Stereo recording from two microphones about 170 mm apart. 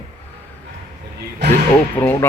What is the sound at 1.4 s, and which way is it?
Speech, 90° right.